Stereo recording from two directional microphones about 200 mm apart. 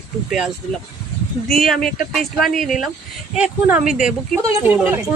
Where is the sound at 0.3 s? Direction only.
5° right (ahead or behind).